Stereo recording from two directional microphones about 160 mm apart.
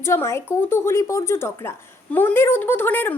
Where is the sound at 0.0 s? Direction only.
15° left (ahead or behind).